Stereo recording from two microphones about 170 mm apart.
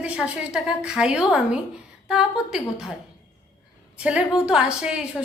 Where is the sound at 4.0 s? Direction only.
5° right (ahead or behind).